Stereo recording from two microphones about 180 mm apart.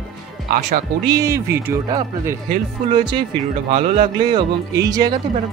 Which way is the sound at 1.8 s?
25° right (ahead or behind).